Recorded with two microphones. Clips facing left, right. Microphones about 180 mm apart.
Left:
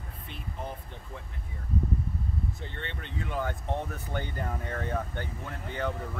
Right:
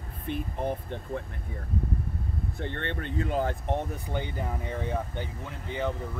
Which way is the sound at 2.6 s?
60° right (ahead or behind).